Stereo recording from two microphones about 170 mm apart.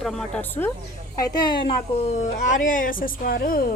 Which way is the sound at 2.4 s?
50° left (ahead or behind).